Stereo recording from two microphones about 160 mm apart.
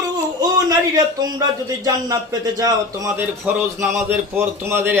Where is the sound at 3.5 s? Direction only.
10° right (ahead or behind).